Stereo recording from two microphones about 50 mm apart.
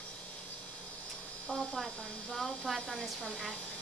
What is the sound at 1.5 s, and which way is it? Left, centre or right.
Speech, centre.